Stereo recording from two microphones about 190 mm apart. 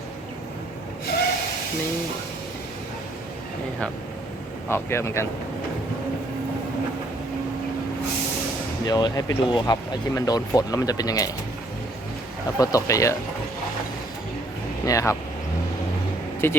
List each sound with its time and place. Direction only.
4.7 s speech: 15° left (ahead or behind)
8.9 s speech: 20° left (ahead or behind)
12.5 s speech: 15° left (ahead or behind)
14.8 s speech: 15° left (ahead or behind)
16.4 s speech: 10° left (ahead or behind)